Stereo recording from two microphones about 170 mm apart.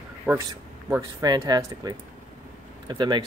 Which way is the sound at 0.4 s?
20° right (ahead or behind).